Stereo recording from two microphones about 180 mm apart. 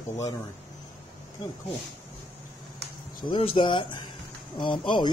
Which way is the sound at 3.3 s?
30° left (ahead or behind).